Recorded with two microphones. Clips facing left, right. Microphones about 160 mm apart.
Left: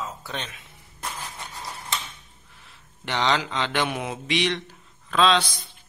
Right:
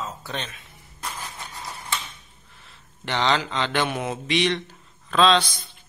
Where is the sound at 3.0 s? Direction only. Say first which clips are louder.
Right 1 dB; 10° left (ahead or behind).